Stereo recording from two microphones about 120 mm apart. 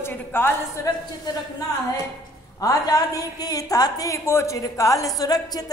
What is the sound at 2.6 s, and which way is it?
A woman's voice, 30° left (ahead or behind).